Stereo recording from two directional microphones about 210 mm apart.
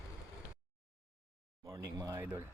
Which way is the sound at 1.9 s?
15° right (ahead or behind).